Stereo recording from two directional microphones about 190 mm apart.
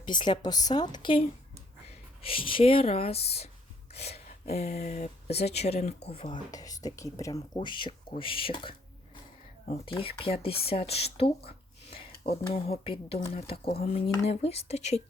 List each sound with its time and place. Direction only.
0.1 s speech: 25° left (ahead or behind)
2.2 s speech: 30° left (ahead or behind)